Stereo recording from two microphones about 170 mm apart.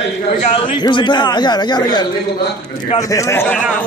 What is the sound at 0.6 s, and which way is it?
A man's voice, 30° left (ahead or behind).